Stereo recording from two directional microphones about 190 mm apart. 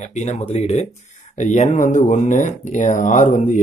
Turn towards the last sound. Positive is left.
turn(degrees=40)  # may be behind; listen again after turning